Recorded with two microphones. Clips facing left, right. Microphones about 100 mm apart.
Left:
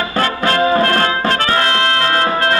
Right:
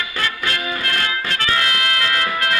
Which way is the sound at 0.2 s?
40° left (ahead or behind).